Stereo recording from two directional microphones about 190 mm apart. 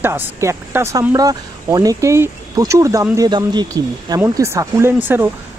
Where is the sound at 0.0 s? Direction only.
10° right (ahead or behind).